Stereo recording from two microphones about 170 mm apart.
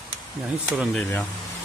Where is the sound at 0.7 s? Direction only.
Centre (ahead or behind).